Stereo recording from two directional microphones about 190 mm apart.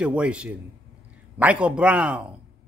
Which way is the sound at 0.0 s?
5° right (ahead or behind).